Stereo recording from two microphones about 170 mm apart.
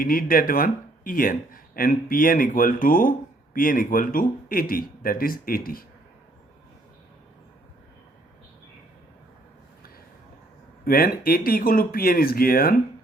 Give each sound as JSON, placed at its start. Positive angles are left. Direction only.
{"t": 0.0, "sound": "speech", "side_deg": 55}
{"t": 10.8, "sound": "speech", "side_deg": 60}